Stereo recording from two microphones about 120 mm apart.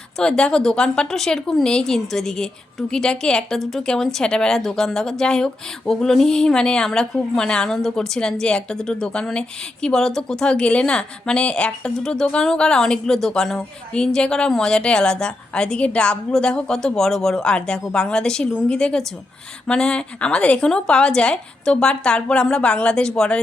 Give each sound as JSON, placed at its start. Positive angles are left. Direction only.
{"t": 0.2, "sound": "speech", "side_deg": 5}